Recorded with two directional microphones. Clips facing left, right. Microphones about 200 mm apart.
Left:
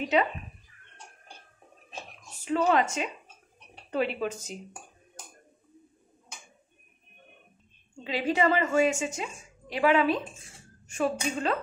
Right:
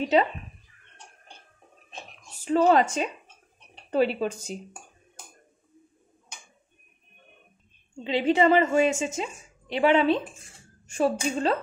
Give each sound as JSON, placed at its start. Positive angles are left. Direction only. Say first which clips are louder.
{"t": 2.4, "sound": "speech", "louder": "right 4 dB", "side_deg": -35}
{"t": 8.0, "sound": "a woman's voice", "louder": "right 4 dB", "side_deg": -25}